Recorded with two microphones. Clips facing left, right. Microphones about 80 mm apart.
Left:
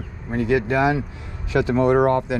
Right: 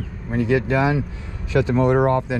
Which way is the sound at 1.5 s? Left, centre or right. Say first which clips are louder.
Even; left.